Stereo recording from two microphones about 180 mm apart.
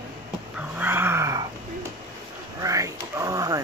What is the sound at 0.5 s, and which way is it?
Dog, 10° right (ahead or behind).